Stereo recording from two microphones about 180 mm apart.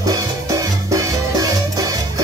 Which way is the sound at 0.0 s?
20° right (ahead or behind).